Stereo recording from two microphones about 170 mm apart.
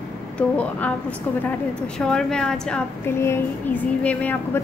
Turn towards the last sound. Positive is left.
turn(degrees=10)  # may be behind; listen again after turning